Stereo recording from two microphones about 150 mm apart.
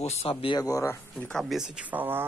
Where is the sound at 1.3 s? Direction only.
Centre (ahead or behind).